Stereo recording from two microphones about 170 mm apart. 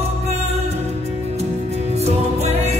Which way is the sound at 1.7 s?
40° right (ahead or behind).